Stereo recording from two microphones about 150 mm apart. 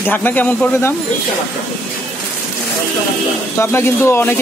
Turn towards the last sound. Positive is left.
turn(degrees=15)  # may be behind; listen again after turning